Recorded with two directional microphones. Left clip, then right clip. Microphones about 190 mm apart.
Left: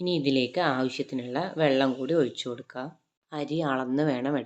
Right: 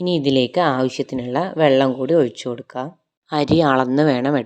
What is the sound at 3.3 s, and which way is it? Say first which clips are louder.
Speech: right 13 dB; 50° right (ahead or behind).